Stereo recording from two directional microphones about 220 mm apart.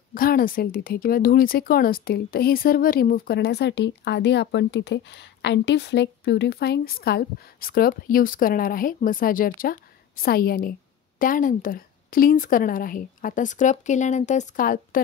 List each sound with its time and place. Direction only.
0.1 s speech: 40° left (ahead or behind)